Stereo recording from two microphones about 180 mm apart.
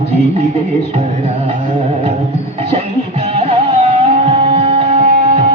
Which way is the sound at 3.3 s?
35° right (ahead or behind).